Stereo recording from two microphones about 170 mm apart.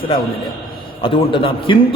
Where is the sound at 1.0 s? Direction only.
30° left (ahead or behind).